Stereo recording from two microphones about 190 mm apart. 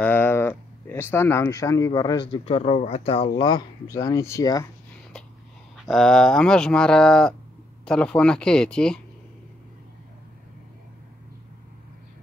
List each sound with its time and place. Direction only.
0.0 s speech: 10° left (ahead or behind)
5.9 s speech: 5° left (ahead or behind)